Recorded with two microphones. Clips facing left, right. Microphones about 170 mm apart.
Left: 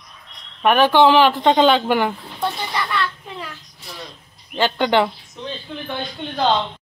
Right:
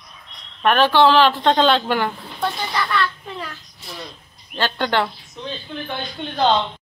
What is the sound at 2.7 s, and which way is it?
Speech, 10° left (ahead or behind).